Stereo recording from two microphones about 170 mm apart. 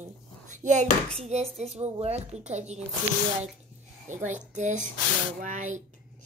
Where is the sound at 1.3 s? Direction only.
40° right (ahead or behind).